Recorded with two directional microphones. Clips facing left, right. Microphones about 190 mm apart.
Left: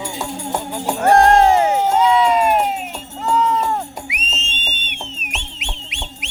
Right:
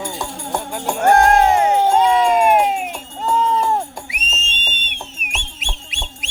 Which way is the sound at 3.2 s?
25° right (ahead or behind).